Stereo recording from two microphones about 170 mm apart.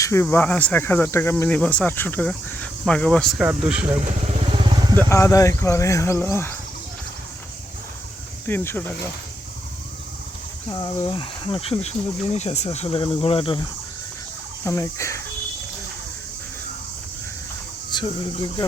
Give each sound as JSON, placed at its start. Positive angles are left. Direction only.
{"t": 0.0, "sound": "speech", "side_deg": 15}
{"t": 4.3, "sound": "motorcycle", "side_deg": -30}
{"t": 4.9, "sound": "speech", "side_deg": 15}
{"t": 8.4, "sound": "speech", "side_deg": 10}
{"t": 10.7, "sound": "speech", "side_deg": 25}
{"t": 14.6, "sound": "speech", "side_deg": 15}
{"t": 17.9, "sound": "a sound", "side_deg": 25}